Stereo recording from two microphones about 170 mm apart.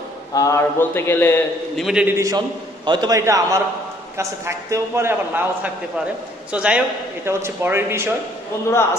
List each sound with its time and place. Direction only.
0.3 s speech: 20° left (ahead or behind)
1.8 s a man's voice: 5° right (ahead or behind)
2.1 s a man's voice: 20° right (ahead or behind)